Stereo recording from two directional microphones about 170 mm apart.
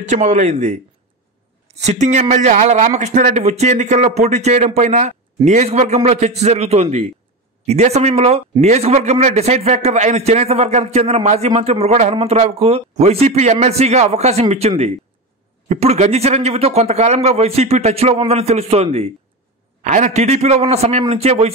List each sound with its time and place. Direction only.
0.0 s speech: 45° right (ahead or behind)
1.8 s a man's voice: 40° right (ahead or behind)
15.7 s a man's voice: 40° right (ahead or behind)